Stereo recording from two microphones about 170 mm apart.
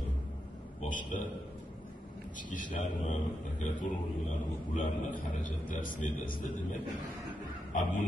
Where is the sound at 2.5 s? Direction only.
45° left (ahead or behind).